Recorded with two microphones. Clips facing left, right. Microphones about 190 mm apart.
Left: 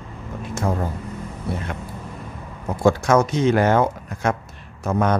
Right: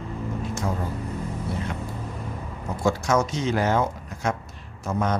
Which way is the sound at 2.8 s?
55° left (ahead or behind).